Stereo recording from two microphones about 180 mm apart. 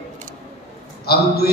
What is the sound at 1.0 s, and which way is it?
Speech, 60° left (ahead or behind).